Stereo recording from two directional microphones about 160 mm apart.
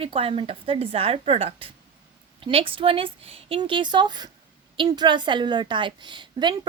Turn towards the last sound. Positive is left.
turn(degrees=-30)  # may be behind; listen again after turning